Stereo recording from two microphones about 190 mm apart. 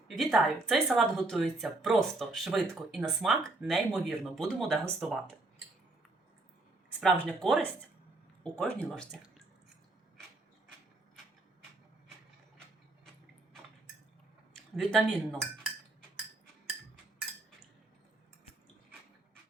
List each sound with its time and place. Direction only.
0.2 s speech: centre (ahead or behind)
7.0 s speech: centre (ahead or behind)
14.8 s speech: 5° left (ahead or behind)